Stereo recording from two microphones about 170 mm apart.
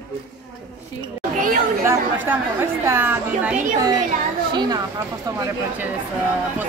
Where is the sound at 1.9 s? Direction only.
15° right (ahead or behind).